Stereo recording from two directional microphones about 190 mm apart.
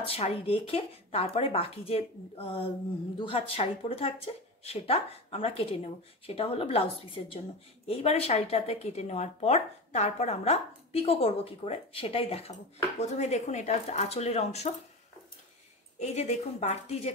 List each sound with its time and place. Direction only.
0.0 s a woman's voice: 30° left (ahead or behind)
16.0 s a woman's voice: 35° left (ahead or behind)